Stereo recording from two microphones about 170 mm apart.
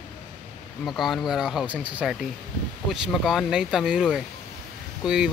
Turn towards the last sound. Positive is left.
turn(degrees=-5)  # may be behind; listen again after turning